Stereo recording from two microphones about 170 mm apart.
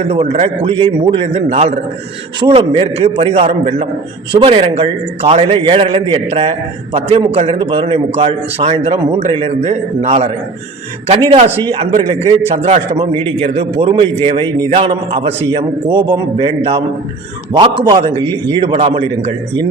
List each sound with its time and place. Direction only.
0.0 s a man's voice: 35° right (ahead or behind)